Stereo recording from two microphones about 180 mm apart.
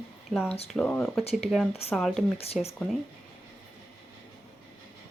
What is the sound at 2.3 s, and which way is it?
Speech, 35° left (ahead or behind).